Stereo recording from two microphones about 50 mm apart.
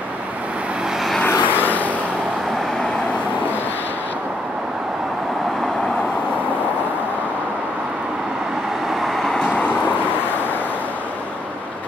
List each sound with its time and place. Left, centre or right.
1.2 s vehicle: left
9.1 s vehicle: centre